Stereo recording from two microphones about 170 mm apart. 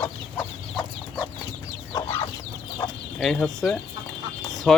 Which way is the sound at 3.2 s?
5° left (ahead or behind).